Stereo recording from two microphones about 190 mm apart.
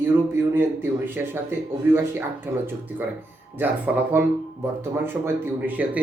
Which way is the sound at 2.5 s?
10° right (ahead or behind).